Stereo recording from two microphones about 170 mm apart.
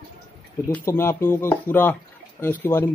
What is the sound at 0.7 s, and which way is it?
Speech, 10° left (ahead or behind).